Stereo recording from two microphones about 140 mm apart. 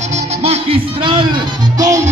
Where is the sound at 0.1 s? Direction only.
50° right (ahead or behind).